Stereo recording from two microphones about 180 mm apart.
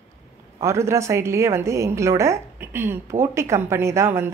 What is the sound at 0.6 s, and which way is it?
A woman's voice, 15° right (ahead or behind).